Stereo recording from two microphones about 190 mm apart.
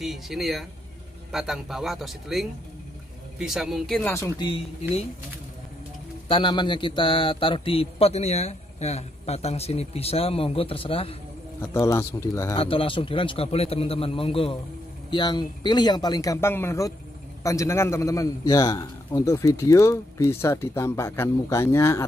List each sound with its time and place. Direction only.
0.0 s a man's voice: centre (ahead or behind)
4.1 s a man's voice: 15° left (ahead or behind)
6.2 s a man's voice: 25° left (ahead or behind)
11.6 s a man's voice: 15° left (ahead or behind)
12.5 s a man's voice: 30° left (ahead or behind)